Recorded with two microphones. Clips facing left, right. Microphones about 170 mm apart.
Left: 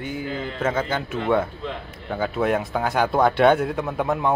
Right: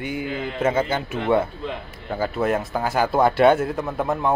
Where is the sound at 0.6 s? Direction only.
10° right (ahead or behind).